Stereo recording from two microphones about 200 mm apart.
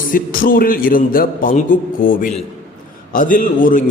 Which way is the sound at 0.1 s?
45° left (ahead or behind).